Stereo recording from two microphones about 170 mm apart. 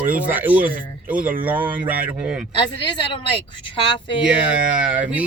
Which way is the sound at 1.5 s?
10° right (ahead or behind).